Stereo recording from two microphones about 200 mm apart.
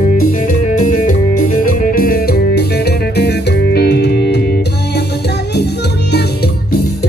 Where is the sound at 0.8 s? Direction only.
40° left (ahead or behind).